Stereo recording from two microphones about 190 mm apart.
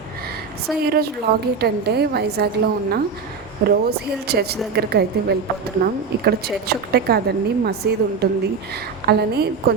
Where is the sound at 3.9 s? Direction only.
55° right (ahead or behind).